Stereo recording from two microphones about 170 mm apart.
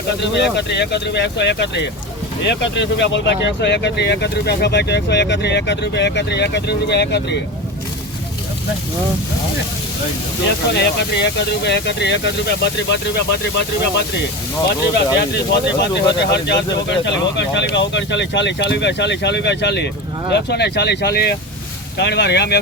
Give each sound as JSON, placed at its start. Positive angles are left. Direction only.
{"t": 0.2, "sound": "speech", "side_deg": 85}
{"t": 10.8, "sound": "speech", "side_deg": 85}
{"t": 14.9, "sound": "speech", "side_deg": 85}
{"t": 20.3, "sound": "speech", "side_deg": 80}
{"t": 21.9, "sound": "speech", "side_deg": 90}